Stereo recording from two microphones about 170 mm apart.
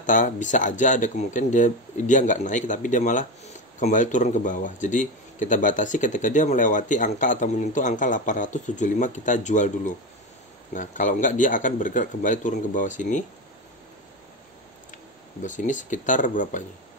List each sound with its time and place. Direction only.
0.0 s speech: 50° left (ahead or behind)
15.4 s speech: 45° left (ahead or behind)